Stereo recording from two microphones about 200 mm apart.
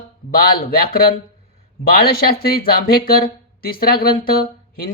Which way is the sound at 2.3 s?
50° left (ahead or behind).